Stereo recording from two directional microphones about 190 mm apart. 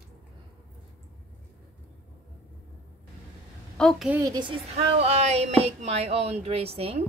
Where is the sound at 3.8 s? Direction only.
Centre (ahead or behind).